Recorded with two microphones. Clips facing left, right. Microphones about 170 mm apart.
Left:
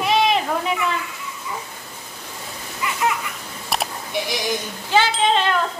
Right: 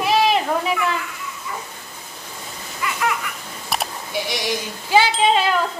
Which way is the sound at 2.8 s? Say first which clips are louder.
Even; 20° left (ahead or behind).